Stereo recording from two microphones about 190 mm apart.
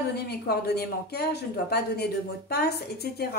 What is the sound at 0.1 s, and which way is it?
Speech, 55° left (ahead or behind).